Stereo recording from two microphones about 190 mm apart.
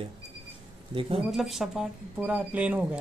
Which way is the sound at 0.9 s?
30° right (ahead or behind).